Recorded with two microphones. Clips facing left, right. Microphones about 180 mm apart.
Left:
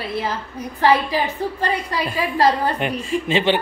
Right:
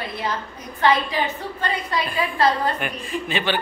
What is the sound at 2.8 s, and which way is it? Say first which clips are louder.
Speech: left 5 dB; 25° left (ahead or behind).